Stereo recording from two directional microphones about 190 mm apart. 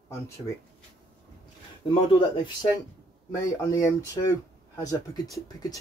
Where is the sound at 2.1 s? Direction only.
25° left (ahead or behind).